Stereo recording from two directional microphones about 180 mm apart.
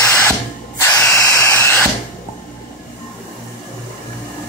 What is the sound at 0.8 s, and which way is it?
Drill, 10° left (ahead or behind).